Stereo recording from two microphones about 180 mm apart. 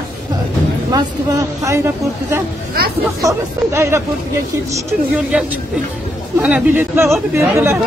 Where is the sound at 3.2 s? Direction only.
15° right (ahead or behind).